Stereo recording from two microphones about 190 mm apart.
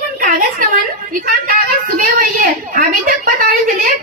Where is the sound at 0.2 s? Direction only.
45° right (ahead or behind).